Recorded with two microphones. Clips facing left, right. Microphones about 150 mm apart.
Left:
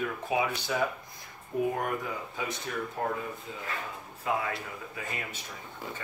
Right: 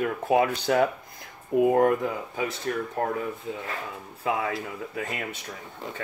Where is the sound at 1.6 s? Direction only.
85° right.